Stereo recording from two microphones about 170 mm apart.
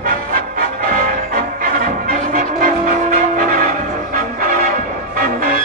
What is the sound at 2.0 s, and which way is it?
Music, 50° right (ahead or behind).